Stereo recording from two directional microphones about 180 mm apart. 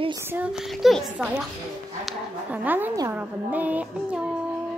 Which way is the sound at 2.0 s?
10° right (ahead or behind).